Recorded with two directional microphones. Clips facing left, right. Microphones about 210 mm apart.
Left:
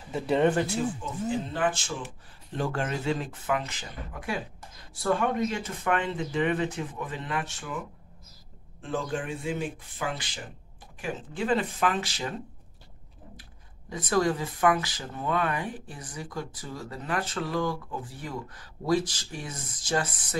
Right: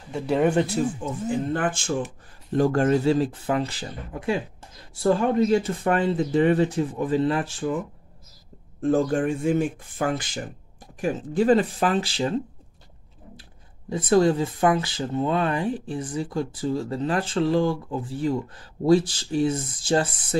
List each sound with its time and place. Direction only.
0.1 s speech: centre (ahead or behind)
1.0 s speech: 50° right (ahead or behind); by 7.7 s 30° right (ahead or behind)
8.8 s speech: 45° right (ahead or behind)
13.4 s speech: 30° right (ahead or behind)